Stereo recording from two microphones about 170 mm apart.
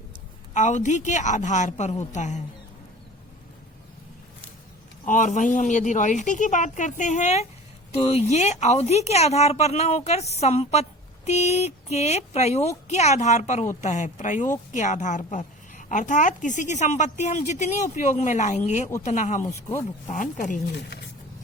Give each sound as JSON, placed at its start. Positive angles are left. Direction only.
{"t": 0.5, "sound": "a woman's voice", "side_deg": 45}
{"t": 5.0, "sound": "a woman's voice", "side_deg": 50}
{"t": 19.4, "sound": "speech", "side_deg": 15}
{"t": 20.1, "sound": "a woman's voice", "side_deg": 50}